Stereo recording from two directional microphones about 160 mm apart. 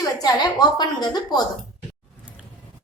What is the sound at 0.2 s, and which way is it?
A woman's voice, 25° left (ahead or behind).